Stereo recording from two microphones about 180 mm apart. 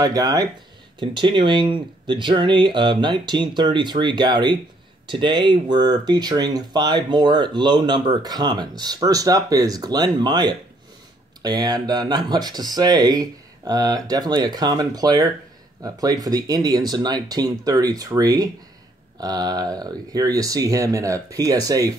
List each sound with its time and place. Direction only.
0.0 s speech: 20° right (ahead or behind)